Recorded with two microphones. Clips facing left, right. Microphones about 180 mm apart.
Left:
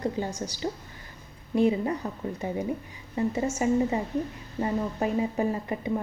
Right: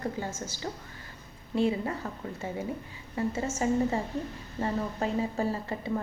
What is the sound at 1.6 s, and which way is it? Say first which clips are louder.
A woman's voice: left 4 dB; 20° left (ahead or behind).